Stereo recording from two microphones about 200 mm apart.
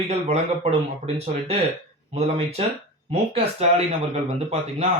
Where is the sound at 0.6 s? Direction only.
30° right (ahead or behind).